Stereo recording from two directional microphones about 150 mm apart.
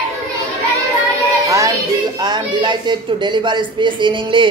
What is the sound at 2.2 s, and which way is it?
Speech, 30° right (ahead or behind).